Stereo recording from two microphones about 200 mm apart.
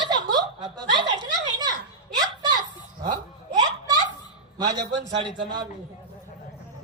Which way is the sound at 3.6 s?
20° right (ahead or behind).